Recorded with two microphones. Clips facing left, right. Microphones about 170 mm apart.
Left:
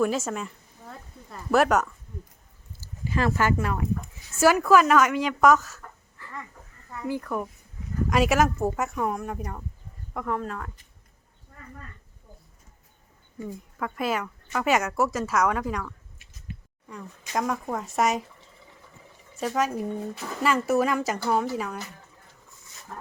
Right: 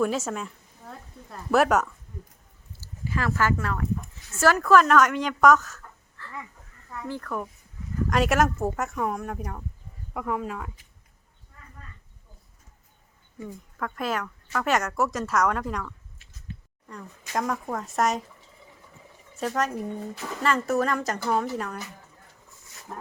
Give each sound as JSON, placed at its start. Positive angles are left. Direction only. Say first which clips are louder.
{"t": 0.0, "sound": "speech", "louder": "left 1 dB", "side_deg": 0}
{"t": 2.8, "sound": "speech", "louder": "left 3 dB", "side_deg": 20}
{"t": 13.7, "sound": "speech", "louder": "left 1 dB", "side_deg": 5}
{"t": 19.4, "sound": "speech", "louder": "left 1 dB", "side_deg": 5}